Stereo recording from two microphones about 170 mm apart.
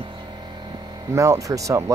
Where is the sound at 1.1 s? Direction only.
20° right (ahead or behind).